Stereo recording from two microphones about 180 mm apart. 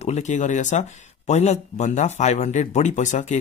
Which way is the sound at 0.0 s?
40° left (ahead or behind).